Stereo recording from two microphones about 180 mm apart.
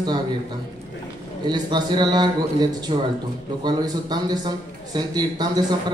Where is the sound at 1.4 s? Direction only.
25° right (ahead or behind).